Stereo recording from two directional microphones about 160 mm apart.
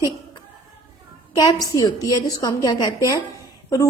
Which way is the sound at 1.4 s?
25° left (ahead or behind).